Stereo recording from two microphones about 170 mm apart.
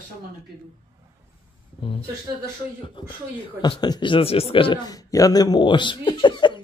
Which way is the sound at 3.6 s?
25° left (ahead or behind).